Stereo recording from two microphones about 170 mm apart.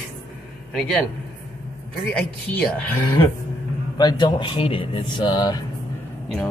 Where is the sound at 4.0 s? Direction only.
25° left (ahead or behind).